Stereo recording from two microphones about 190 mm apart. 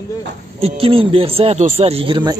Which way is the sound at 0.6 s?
30° right (ahead or behind).